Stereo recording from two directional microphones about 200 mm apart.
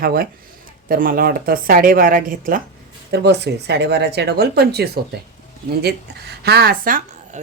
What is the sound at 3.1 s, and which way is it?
Speech, 55° right (ahead or behind).